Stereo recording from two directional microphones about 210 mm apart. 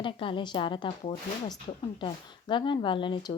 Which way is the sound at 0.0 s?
25° left (ahead or behind).